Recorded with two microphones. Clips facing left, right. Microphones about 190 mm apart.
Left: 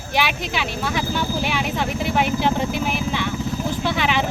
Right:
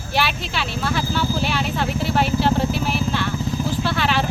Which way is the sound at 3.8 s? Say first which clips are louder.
Left 2 dB; 15° left (ahead or behind).